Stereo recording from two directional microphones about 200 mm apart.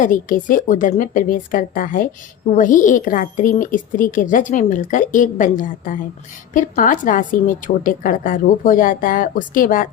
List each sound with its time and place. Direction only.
0.0 s a woman's voice: 40° left (ahead or behind)